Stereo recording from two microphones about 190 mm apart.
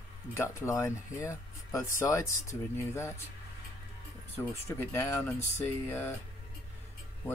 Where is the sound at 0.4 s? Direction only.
15° left (ahead or behind).